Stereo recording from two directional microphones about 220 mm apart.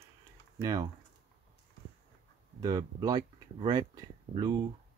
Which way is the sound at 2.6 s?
15° right (ahead or behind).